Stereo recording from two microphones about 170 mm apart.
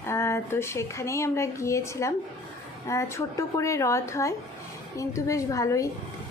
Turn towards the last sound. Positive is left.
turn(degrees=20)  # may be behind; listen again after turning